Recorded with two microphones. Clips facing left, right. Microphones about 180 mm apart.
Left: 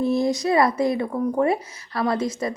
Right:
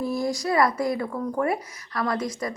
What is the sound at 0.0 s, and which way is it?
A woman's voice, 25° left (ahead or behind).